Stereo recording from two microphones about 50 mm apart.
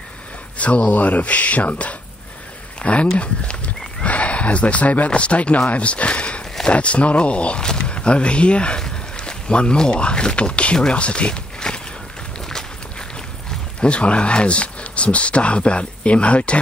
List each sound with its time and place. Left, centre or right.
0.6 s speech: left
13.7 s speech: left